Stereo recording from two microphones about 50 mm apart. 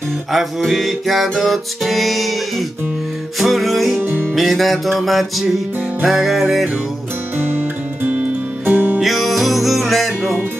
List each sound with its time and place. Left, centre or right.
0.3 s music: centre
3.3 s music: centre
4.0 s music: right
4.4 s music: centre
7.3 s music: right
9.0 s music: centre